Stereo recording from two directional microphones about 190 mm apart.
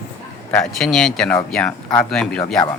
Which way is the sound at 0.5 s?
Centre (ahead or behind).